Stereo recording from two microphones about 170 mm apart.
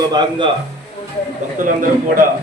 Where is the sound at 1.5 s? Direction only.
55° right (ahead or behind).